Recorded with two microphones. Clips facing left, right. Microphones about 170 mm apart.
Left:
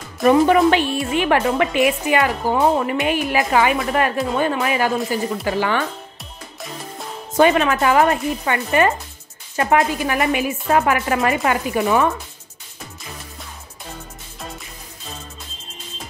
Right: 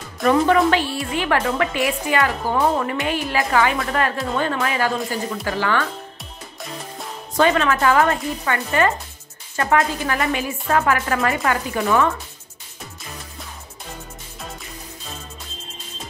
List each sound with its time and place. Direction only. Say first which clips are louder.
0.2 s speech: left 3 dB; 20° left (ahead or behind)
7.3 s speech: left 2 dB; 20° left (ahead or behind)